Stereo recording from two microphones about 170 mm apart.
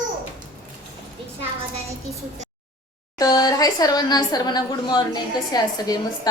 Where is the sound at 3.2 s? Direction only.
20° left (ahead or behind).